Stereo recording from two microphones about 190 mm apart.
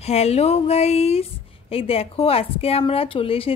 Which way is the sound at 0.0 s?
35° left (ahead or behind).